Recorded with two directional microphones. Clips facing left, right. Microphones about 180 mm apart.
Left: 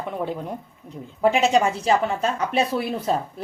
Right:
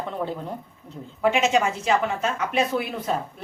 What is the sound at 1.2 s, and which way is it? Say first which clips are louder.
Speech: left 2 dB; 35° left (ahead or behind).